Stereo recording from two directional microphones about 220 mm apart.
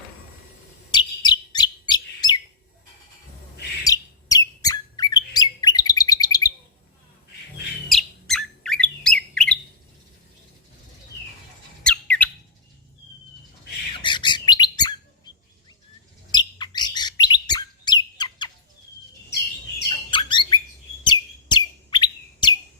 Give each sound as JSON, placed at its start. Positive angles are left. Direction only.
{"t": 0.9, "sound": "chirp", "side_deg": 20}
{"t": 3.8, "sound": "squawk", "side_deg": 15}
{"t": 7.9, "sound": "bird", "side_deg": 0}
{"t": 11.8, "sound": "squawk", "side_deg": 5}
{"t": 13.9, "sound": "bird", "side_deg": 20}
{"t": 16.3, "sound": "bird", "side_deg": 20}
{"t": 20.1, "sound": "bird", "side_deg": 20}
{"t": 21.0, "sound": "chirp", "side_deg": 20}